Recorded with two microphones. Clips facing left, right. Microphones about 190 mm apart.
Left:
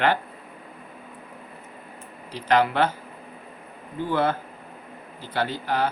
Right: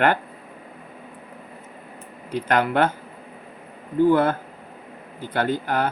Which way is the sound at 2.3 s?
50° right (ahead or behind).